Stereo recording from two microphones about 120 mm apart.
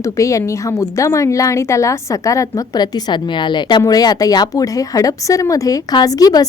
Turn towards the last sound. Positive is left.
turn(degrees=30)  # may be behind; listen again after turning